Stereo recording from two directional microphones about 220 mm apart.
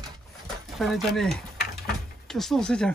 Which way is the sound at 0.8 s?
Centre (ahead or behind).